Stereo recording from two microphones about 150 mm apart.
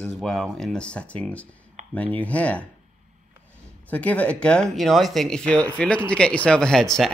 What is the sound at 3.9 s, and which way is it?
Speech, 10° left (ahead or behind).